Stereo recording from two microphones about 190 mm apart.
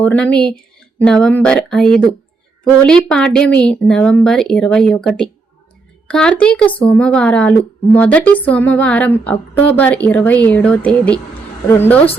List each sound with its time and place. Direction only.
0.0 s speech: 5° left (ahead or behind)